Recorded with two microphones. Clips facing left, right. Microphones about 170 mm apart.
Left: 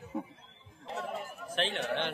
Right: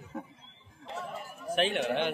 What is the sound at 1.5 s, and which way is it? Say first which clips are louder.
Speech: right 5 dB; 15° right (ahead or behind).